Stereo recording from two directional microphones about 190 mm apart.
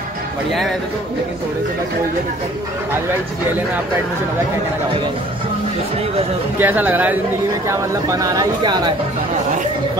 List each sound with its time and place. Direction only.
0.5 s speech: centre (ahead or behind)
6.6 s speech: 10° right (ahead or behind)